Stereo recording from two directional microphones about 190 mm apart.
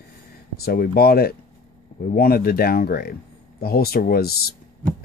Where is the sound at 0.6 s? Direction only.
55° left (ahead or behind).